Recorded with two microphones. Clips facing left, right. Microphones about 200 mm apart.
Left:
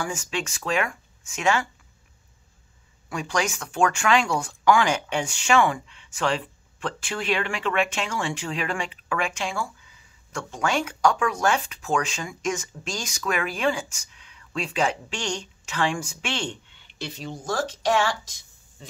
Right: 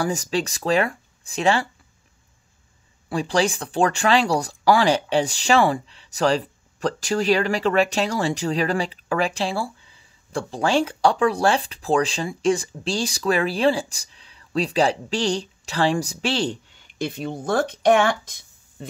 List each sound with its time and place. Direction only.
0.0 s speech: 35° right (ahead or behind)
3.1 s speech: 30° right (ahead or behind); by 18.9 s 55° right (ahead or behind)